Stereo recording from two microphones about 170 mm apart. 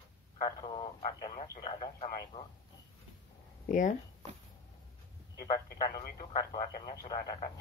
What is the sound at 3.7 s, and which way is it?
Speech, 50° left (ahead or behind).